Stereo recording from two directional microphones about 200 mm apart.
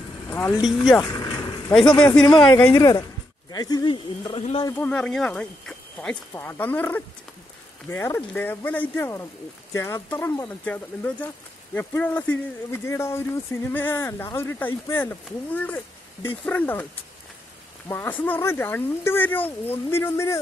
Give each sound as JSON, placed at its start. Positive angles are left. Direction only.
{"t": 0.3, "sound": "speech", "side_deg": 10}
{"t": 0.6, "sound": "speech", "side_deg": 0}
{"t": 2.0, "sound": "speech", "side_deg": 20}
{"t": 4.6, "sound": "speech", "side_deg": 10}
{"t": 17.8, "sound": "speech", "side_deg": 10}